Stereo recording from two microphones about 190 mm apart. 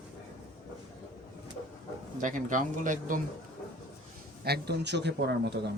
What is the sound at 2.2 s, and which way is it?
Speech, 45° right (ahead or behind).